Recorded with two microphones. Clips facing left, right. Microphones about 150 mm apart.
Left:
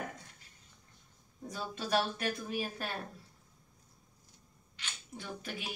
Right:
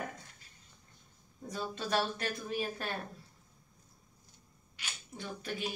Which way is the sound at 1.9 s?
10° left (ahead or behind).